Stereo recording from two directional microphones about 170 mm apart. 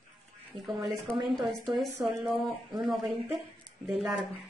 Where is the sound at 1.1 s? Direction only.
30° right (ahead or behind).